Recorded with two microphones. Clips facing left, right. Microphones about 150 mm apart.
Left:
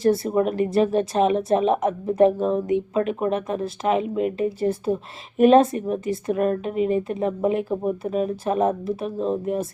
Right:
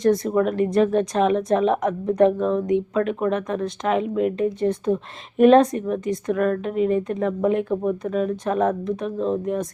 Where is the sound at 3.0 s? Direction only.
15° left (ahead or behind).